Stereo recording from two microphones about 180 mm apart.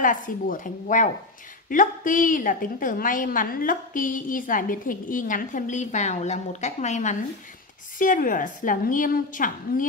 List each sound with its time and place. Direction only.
0.0 s a woman's voice: 45° left (ahead or behind)